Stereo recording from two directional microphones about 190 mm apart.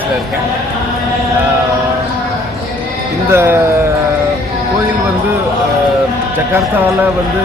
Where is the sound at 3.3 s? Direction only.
10° right (ahead or behind).